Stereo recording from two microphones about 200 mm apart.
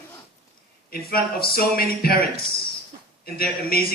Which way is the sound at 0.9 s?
50° left (ahead or behind).